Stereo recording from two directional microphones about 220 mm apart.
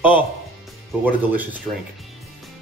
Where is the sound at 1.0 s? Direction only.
10° right (ahead or behind).